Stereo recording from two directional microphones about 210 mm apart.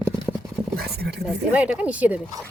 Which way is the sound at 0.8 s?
50° right (ahead or behind).